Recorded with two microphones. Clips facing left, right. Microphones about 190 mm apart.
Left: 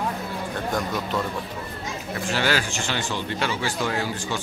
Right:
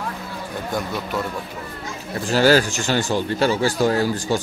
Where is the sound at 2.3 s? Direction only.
40° right (ahead or behind).